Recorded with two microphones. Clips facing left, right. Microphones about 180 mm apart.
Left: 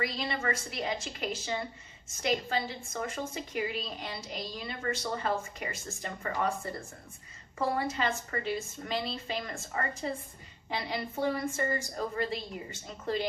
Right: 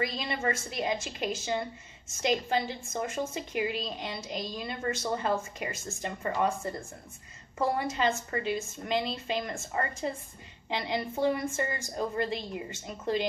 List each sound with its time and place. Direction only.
0.0 s a woman's voice: 25° right (ahead or behind)
7.9 s a woman's voice: 25° right (ahead or behind)